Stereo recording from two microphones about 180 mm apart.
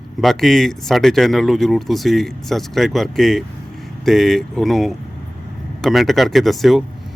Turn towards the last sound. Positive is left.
turn(degrees=0)  # may be behind; listen again after turning